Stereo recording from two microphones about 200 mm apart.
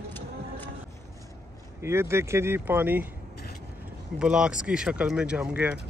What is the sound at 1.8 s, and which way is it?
Speech, 15° right (ahead or behind).